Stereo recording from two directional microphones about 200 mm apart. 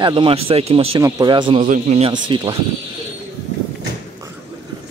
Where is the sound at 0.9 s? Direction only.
20° right (ahead or behind).